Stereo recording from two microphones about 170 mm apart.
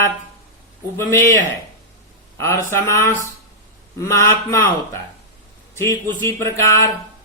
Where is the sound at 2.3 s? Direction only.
15° left (ahead or behind).